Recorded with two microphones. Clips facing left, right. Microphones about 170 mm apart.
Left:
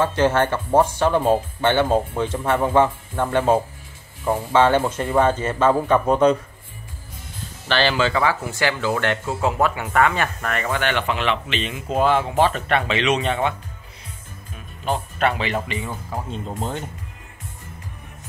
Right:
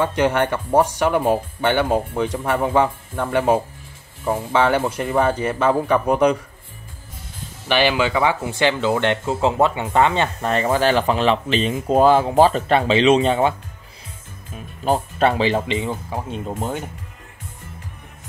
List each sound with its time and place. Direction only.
0.0 s speech: 15° right (ahead or behind)
7.6 s speech: 15° right (ahead or behind); by 13.6 s 35° right (ahead or behind)
14.9 s speech: 35° right (ahead or behind)